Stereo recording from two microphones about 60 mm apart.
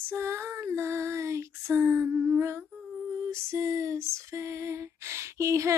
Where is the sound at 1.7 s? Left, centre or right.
Right.